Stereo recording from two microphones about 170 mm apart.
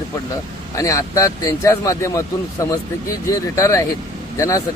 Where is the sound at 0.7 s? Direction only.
20° left (ahead or behind).